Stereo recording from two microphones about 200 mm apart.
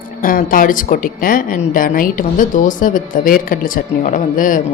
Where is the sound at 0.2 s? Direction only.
45° left (ahead or behind).